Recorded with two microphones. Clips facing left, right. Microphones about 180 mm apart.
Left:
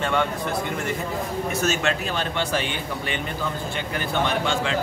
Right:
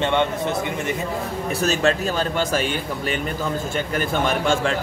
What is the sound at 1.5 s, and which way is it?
Speech, 35° right (ahead or behind).